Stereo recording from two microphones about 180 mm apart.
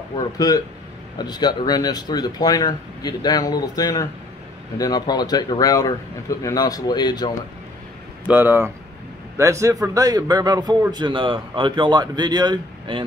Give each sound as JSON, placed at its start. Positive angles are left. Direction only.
{"t": 0.1, "sound": "speech", "side_deg": 20}
{"t": 8.3, "sound": "a man's voice", "side_deg": -10}